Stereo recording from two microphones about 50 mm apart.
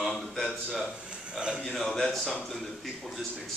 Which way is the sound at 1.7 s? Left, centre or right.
Centre.